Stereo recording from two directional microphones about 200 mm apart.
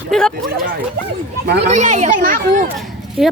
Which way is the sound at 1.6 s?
35° right (ahead or behind).